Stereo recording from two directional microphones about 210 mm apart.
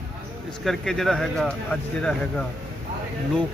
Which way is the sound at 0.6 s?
Centre (ahead or behind).